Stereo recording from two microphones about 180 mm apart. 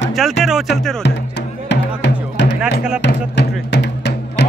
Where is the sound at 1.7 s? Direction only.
80° left.